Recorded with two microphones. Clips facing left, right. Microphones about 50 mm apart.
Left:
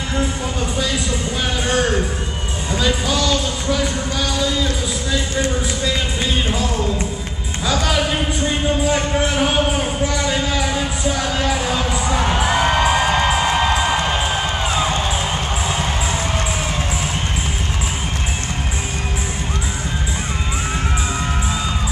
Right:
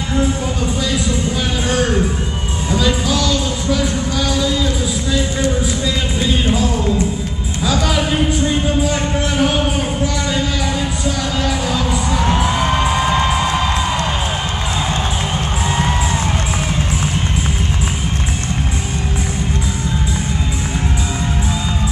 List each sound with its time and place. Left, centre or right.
1.7 s speech: centre
5.9 s music: centre
7.6 s speech: centre
8.5 s music: centre
12.4 s music: left